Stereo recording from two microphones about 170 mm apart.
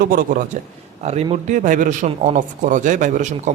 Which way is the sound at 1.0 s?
40° right (ahead or behind).